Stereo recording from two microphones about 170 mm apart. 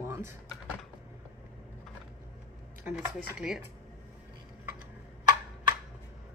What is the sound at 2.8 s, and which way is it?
Speech, 10° right (ahead or behind).